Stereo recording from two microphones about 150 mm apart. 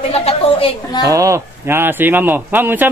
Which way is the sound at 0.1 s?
45° left (ahead or behind).